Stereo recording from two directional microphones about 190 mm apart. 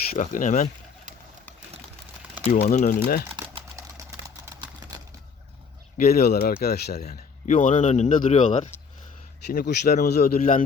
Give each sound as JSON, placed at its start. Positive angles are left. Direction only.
{"t": 0.2, "sound": "speech", "side_deg": 40}
{"t": 2.4, "sound": "speech", "side_deg": 50}
{"t": 3.3, "sound": "typing", "side_deg": -20}
{"t": 4.9, "sound": "a sound", "side_deg": -20}
{"t": 6.1, "sound": "speech", "side_deg": 35}
{"t": 6.3, "sound": "speech", "side_deg": 55}
{"t": 7.0, "sound": "speech", "side_deg": 40}
{"t": 9.5, "sound": "speech", "side_deg": 55}